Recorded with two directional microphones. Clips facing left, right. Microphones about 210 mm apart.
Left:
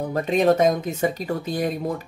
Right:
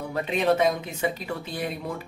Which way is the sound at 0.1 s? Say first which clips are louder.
Left 4 dB; 45° left (ahead or behind).